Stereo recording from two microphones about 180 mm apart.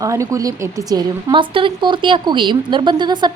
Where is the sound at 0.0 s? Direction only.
15° right (ahead or behind).